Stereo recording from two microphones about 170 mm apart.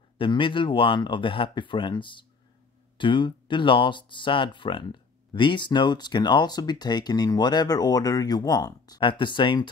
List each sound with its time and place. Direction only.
0.2 s speech: 30° left (ahead or behind)